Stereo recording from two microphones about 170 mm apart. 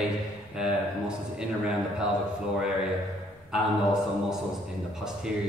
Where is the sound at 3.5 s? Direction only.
5° right (ahead or behind).